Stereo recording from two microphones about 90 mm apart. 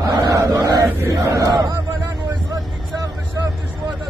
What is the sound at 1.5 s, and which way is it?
Vehicle, 55° right (ahead or behind).